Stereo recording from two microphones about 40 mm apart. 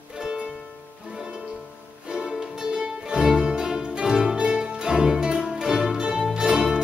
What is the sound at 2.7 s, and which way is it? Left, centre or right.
Music, centre.